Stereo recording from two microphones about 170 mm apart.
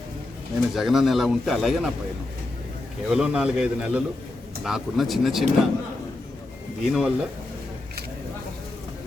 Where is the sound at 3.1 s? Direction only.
5° right (ahead or behind).